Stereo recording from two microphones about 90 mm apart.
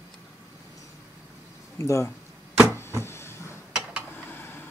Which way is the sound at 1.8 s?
30° left (ahead or behind).